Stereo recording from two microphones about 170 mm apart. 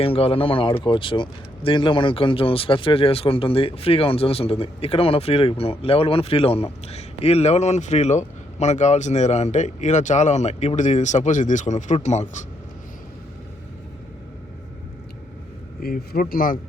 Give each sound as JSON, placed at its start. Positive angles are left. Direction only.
{"t": 0.0, "sound": "speech", "side_deg": 35}
{"t": 15.8, "sound": "a man's voice", "side_deg": 60}